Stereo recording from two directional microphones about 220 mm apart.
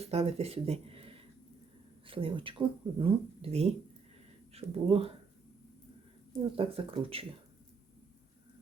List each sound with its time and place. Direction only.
0.0 s speech: 30° right (ahead or behind)
6.6 s speech: 25° right (ahead or behind)